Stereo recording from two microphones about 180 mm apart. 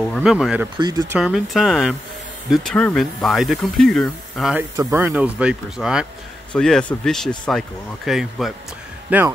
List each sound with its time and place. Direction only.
0.0 s speech: centre (ahead or behind)
0.7 s speech: 20° right (ahead or behind)
1.1 s speech: centre (ahead or behind)
4.6 s speech: 10° right (ahead or behind)